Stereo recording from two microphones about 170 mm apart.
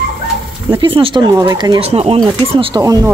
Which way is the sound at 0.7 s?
30° right (ahead or behind).